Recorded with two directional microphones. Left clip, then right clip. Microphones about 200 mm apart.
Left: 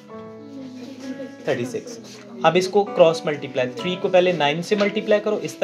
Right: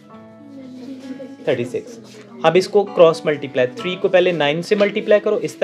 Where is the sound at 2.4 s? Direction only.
50° right (ahead or behind).